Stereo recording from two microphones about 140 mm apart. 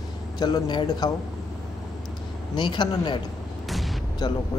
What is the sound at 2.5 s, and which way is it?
Speech, 30° left (ahead or behind).